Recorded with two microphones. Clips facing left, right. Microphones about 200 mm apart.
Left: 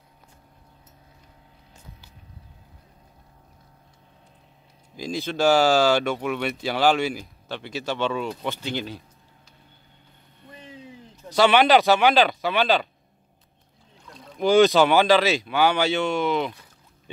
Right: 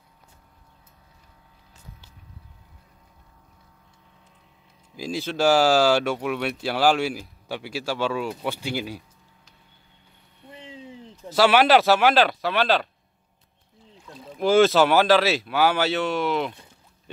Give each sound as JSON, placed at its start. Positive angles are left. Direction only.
{"t": 4.9, "sound": "speech", "side_deg": -5}
{"t": 10.5, "sound": "a sound", "side_deg": -25}
{"t": 11.2, "sound": "speech", "side_deg": -5}
{"t": 14.0, "sound": "speech", "side_deg": -5}